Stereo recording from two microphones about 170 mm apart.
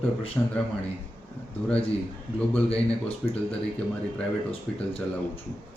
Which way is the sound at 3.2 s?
5° left (ahead or behind).